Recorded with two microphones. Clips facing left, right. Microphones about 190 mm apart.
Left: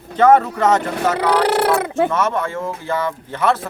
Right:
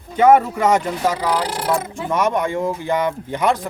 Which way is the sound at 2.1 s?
15° right (ahead or behind).